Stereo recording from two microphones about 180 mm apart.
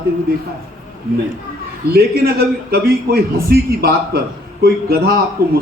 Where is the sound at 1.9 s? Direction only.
60° right (ahead or behind).